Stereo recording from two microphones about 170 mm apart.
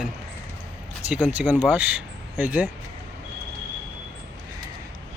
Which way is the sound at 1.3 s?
10° right (ahead or behind).